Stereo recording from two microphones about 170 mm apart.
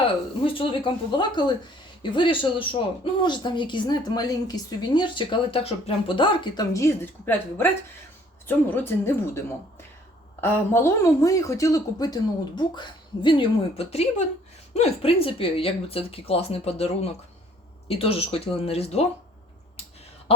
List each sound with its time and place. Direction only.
0.4 s speech: 30° left (ahead or behind); by 9.4 s 15° left (ahead or behind)
10.4 s speech: 15° left (ahead or behind); by 19.0 s 35° left (ahead or behind)